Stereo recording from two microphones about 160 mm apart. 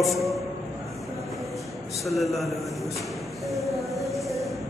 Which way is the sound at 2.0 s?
Centre (ahead or behind).